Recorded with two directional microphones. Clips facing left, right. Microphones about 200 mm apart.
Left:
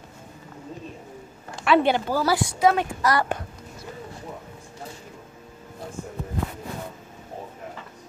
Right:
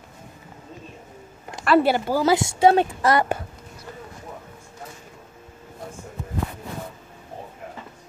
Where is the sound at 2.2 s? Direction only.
20° right (ahead or behind).